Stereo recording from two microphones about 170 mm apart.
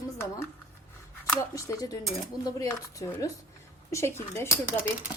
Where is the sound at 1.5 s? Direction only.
20° left (ahead or behind).